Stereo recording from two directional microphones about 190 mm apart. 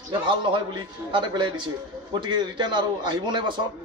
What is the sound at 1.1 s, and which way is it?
A man's voice, 25° right (ahead or behind).